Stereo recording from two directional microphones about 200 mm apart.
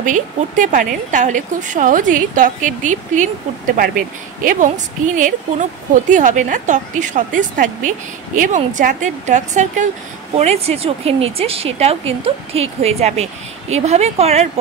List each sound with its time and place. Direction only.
0.0 s speech: 40° right (ahead or behind)